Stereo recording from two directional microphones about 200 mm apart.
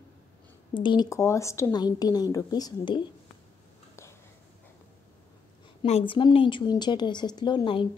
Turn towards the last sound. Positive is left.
turn(degrees=25)  # may be behind; listen again after turning